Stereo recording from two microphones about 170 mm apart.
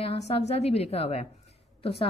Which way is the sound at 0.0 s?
35° left (ahead or behind).